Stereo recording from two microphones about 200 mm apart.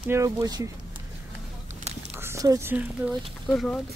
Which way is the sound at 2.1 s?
15° right (ahead or behind).